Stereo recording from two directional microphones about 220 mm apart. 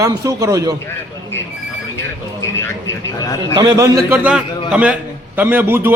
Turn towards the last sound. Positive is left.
turn(degrees=-10)  # may be behind; listen again after turning